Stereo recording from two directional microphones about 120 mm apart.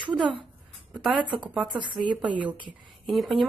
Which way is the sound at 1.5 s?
10° right (ahead or behind).